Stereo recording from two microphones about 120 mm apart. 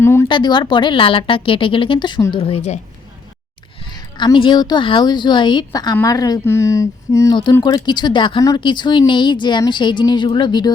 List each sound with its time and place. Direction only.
0.0 s a sound: 20° left (ahead or behind)
0.3 s speech: 40° left (ahead or behind)
2.3 s speech: 50° left (ahead or behind)
3.9 s speech: 35° left (ahead or behind)
7.6 s speech: 35° left (ahead or behind)